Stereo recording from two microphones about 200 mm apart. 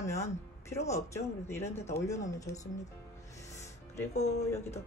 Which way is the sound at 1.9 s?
15° left (ahead or behind).